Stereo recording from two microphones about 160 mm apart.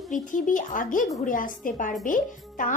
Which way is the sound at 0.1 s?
55° left (ahead or behind).